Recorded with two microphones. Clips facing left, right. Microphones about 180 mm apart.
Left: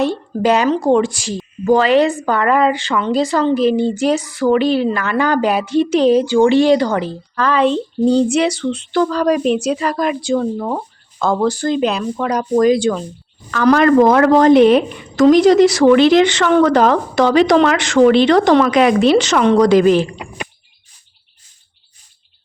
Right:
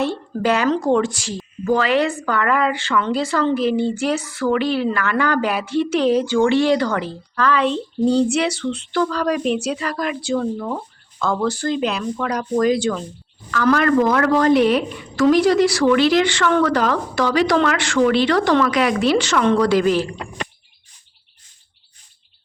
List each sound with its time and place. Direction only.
0.0 s speech: 15° left (ahead or behind); by 11.4 s 35° left (ahead or behind)
11.4 s speech: 15° left (ahead or behind)
14.1 s speech: 25° left (ahead or behind)